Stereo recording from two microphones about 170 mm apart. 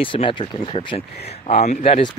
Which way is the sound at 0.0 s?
30° left (ahead or behind).